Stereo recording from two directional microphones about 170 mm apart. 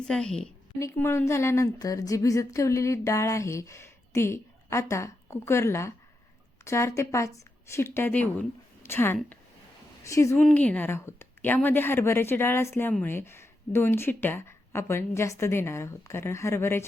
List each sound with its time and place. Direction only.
0.1 s a woman's voice: 5° left (ahead or behind)
0.8 s a woman's voice: 15° left (ahead or behind)